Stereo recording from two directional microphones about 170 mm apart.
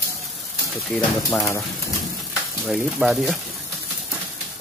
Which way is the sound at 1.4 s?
15° left (ahead or behind).